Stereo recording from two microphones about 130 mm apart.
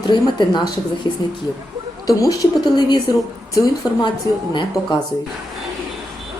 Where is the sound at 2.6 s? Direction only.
35° left (ahead or behind).